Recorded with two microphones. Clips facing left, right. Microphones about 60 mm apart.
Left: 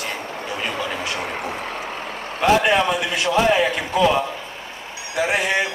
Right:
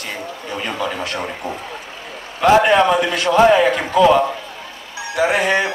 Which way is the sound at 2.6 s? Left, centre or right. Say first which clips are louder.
Right 5 dB; right.